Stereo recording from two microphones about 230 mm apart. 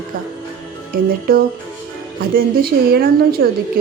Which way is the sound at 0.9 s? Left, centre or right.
Right.